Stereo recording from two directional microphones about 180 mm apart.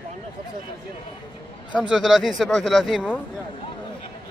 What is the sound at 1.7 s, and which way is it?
Speech, 5° right (ahead or behind).